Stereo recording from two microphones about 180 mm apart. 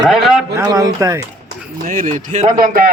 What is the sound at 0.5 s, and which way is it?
Speech, 20° right (ahead or behind).